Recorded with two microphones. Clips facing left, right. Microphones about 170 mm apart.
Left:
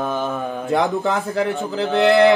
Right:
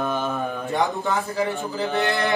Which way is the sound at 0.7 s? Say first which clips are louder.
Left 4 dB; 90° left.